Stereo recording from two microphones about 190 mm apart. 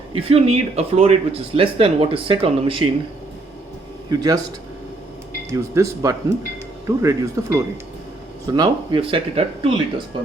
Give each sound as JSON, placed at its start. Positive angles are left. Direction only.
{"t": 0.1, "sound": "speech", "side_deg": -30}
{"t": 4.1, "sound": "speech", "side_deg": -20}
{"t": 5.5, "sound": "speech", "side_deg": -15}